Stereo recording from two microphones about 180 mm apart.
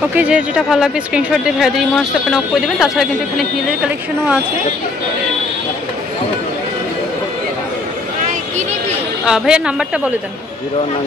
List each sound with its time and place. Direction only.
0.1 s speech: 5° right (ahead or behind)
8.3 s a sound: 40° right (ahead or behind)
9.2 s speech: 5° right (ahead or behind)